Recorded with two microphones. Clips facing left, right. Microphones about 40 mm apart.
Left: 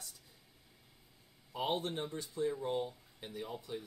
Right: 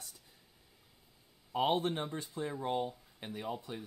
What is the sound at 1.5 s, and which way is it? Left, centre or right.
Speech, right.